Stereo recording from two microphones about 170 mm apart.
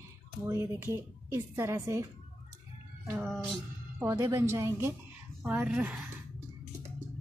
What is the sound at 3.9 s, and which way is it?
Speech, 15° right (ahead or behind).